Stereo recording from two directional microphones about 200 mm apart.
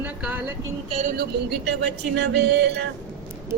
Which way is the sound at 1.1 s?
55° right (ahead or behind).